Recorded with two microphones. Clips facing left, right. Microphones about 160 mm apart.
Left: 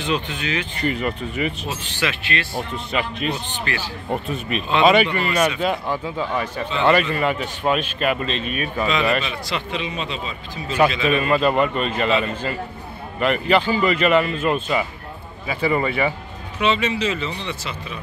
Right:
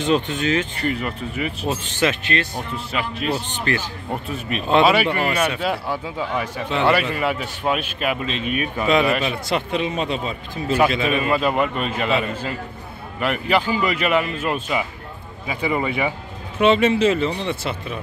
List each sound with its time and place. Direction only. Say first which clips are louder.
0.0 s a man's voice: right 5 dB; 45° right (ahead or behind)
0.7 s a man's voice: left 1 dB; centre (ahead or behind)
1.7 s speech: right 5 dB; 45° right (ahead or behind)
2.7 s a man's voice: left 1 dB; 5° right (ahead or behind)
3.6 s a man's voice: right 4 dB; 45° right (ahead or behind)
4.1 s a man's voice: left 2 dB; centre (ahead or behind)
9.2 s a man's voice: right 4 dB; 45° right (ahead or behind)
11.1 s a man's voice: left 2 dB; 5° right (ahead or behind)
16.5 s a man's voice: right 5 dB; 50° right (ahead or behind)